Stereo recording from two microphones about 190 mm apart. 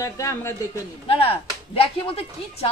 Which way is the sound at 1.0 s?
30° left (ahead or behind).